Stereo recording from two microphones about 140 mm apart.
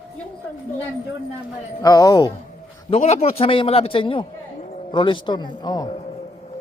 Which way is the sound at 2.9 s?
50° left (ahead or behind).